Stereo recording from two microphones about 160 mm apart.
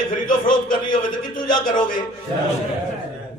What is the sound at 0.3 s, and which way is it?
A man's voice, 60° left (ahead or behind).